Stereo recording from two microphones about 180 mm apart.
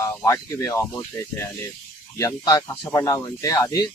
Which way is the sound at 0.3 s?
15° left (ahead or behind).